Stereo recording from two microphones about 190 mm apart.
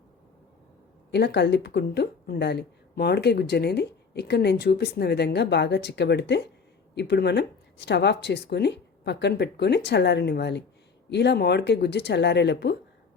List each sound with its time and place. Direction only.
1.1 s speech: 65° left (ahead or behind)